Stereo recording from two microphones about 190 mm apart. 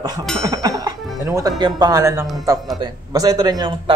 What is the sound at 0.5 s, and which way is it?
Music, 20° right (ahead or behind).